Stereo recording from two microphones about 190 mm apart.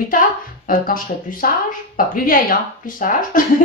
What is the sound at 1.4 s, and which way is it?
Speech, 45° left (ahead or behind).